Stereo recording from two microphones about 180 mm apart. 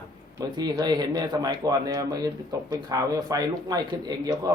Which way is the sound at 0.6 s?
25° right (ahead or behind).